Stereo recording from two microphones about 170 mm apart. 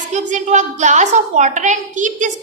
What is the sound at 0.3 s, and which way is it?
A woman's voice, 45° right (ahead or behind).